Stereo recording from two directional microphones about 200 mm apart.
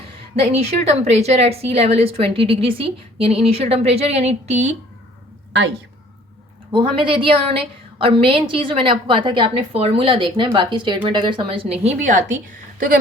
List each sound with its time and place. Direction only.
0.3 s a woman's voice: 30° right (ahead or behind)
6.7 s a woman's voice: 25° right (ahead or behind)